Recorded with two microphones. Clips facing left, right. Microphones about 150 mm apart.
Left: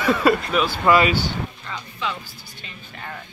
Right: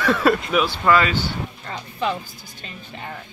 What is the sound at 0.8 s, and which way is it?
Speech, 15° left (ahead or behind).